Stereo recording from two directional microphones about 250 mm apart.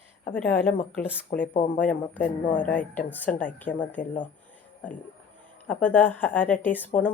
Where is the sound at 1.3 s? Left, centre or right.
Left.